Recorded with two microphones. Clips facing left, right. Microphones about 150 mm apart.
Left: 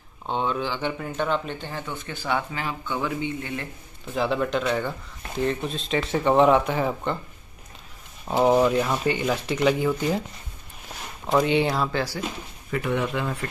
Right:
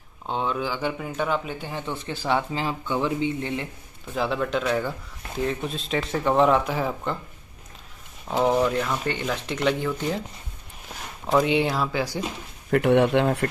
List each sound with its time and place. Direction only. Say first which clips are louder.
0.3 s speech: left 1 dB; 5° right (ahead or behind)
1.9 s speech: right 3 dB; 30° right (ahead or behind)
4.1 s speech: left 1 dB; centre (ahead or behind)
8.3 s speech: left 2 dB; 15° left (ahead or behind)
11.2 s speech: even; centre (ahead or behind)
12.0 s speech: right 1 dB; 15° right (ahead or behind)
12.7 s speech: right 7 dB; 70° right (ahead or behind)